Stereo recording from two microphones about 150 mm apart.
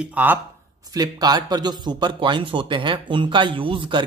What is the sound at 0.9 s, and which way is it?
Speech, 25° right (ahead or behind).